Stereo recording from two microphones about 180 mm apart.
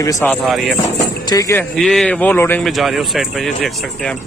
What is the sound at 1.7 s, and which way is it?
Speech, centre (ahead or behind).